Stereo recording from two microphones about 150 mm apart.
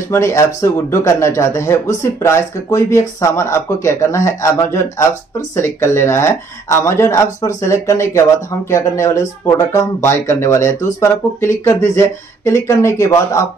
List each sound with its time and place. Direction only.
0.1 s speech: 20° left (ahead or behind)